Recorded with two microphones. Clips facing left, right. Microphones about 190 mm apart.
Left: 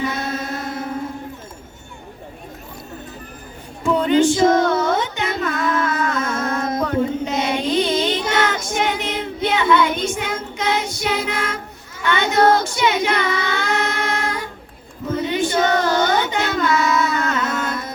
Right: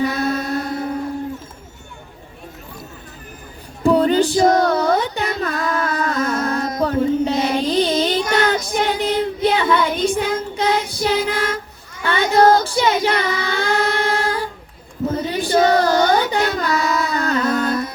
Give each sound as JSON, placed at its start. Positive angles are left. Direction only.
{"t": 3.8, "sound": "music", "side_deg": -35}
{"t": 11.3, "sound": "a sound", "side_deg": -30}
{"t": 12.0, "sound": "child singing", "side_deg": -35}